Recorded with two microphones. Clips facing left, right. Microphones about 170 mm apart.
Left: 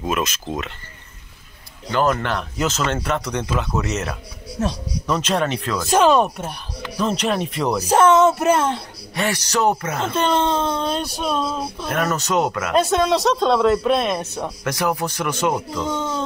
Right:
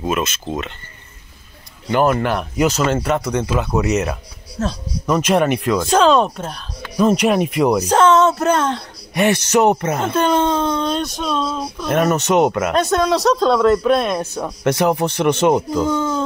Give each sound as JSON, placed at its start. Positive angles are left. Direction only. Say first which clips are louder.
{"t": 0.0, "sound": "speech", "louder": "right 2 dB", "side_deg": 0}
{"t": 1.9, "sound": "speech", "louder": "right 4 dB", "side_deg": -15}
{"t": 4.6, "sound": "speech", "louder": "right 1 dB", "side_deg": 15}
{"t": 5.0, "sound": "speech", "louder": "right 5 dB", "side_deg": -10}
{"t": 5.9, "sound": "speech", "louder": "right 1 dB", "side_deg": 5}
{"t": 7.0, "sound": "speech", "louder": "right 7 dB", "side_deg": -10}
{"t": 7.8, "sound": "speech", "louder": "left 2 dB", "side_deg": 10}
{"t": 9.1, "sound": "speech", "louder": "right 7 dB", "side_deg": -20}
{"t": 10.1, "sound": "speech", "louder": "right 2 dB", "side_deg": 0}
{"t": 11.9, "sound": "speech", "louder": "right 6 dB", "side_deg": -20}
{"t": 12.7, "sound": "speech", "louder": "right 1 dB", "side_deg": 5}
{"t": 14.6, "sound": "speech", "louder": "right 7 dB", "side_deg": -25}